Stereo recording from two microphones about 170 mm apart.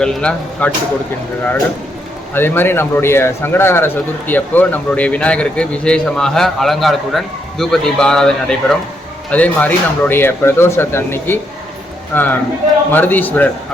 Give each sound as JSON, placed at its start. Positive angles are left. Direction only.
{"t": 0.0, "sound": "speech", "side_deg": 5}
{"t": 2.3, "sound": "a man's voice", "side_deg": 10}